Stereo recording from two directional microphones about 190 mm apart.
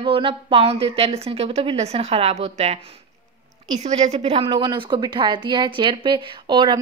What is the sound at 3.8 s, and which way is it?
A woman's voice, 35° right (ahead or behind).